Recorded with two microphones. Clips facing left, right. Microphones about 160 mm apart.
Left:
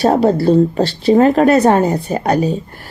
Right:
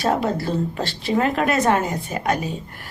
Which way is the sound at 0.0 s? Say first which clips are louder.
Left 9 dB; 35° left (ahead or behind).